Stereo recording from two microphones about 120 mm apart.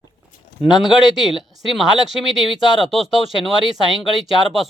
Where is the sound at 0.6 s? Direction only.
40° left (ahead or behind).